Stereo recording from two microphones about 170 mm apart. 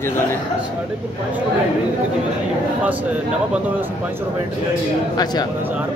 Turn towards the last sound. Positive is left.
turn(degrees=25)  # may be behind; listen again after turning